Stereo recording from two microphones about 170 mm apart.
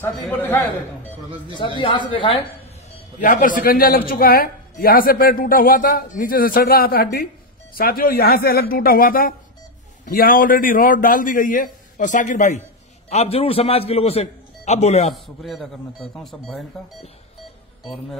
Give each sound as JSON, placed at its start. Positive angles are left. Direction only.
{"t": 0.0, "sound": "a man's voice", "side_deg": 10}
{"t": 1.8, "sound": "a man's voice", "side_deg": 30}
{"t": 3.2, "sound": "a man's voice", "side_deg": 50}
{"t": 15.0, "sound": "speech", "side_deg": 0}